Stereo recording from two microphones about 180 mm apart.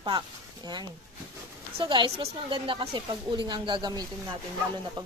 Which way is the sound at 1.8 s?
25° right (ahead or behind).